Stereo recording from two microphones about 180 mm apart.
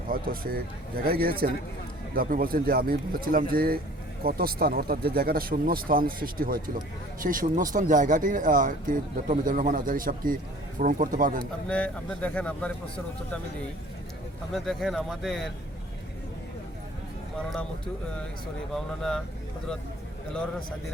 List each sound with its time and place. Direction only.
0.1 s speech: 55° right (ahead or behind)
11.7 s speech: 10° left (ahead or behind)
14.5 s speech: centre (ahead or behind)
18.7 s speech: 5° left (ahead or behind)